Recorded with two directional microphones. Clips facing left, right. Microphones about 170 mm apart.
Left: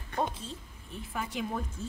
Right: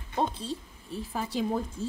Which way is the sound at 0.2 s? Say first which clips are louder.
Right 4 dB; 35° right (ahead or behind).